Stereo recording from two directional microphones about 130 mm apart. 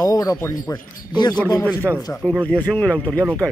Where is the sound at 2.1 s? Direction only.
5° left (ahead or behind).